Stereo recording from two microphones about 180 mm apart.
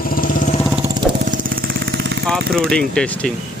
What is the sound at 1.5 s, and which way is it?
Vehicle, 55° right (ahead or behind).